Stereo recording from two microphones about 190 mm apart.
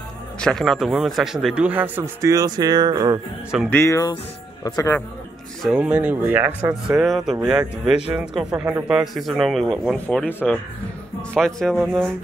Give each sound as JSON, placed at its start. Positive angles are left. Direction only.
{"t": 0.4, "sound": "speech", "side_deg": 5}
{"t": 3.7, "sound": "speech", "side_deg": 15}
{"t": 5.6, "sound": "speech", "side_deg": -5}